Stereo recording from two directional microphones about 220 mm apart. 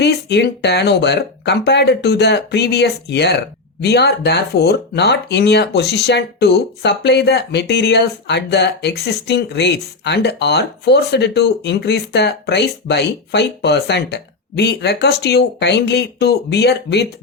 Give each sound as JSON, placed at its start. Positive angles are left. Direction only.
{"t": 0.0, "sound": "speech", "side_deg": 50}